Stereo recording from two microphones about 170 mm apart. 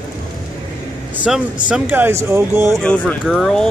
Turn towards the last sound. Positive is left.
turn(degrees=5)  # may be behind; listen again after turning